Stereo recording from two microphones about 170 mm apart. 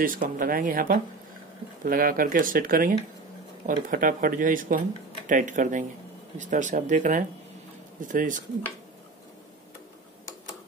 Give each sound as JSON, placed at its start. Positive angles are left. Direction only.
{"t": 0.0, "sound": "speech", "side_deg": -55}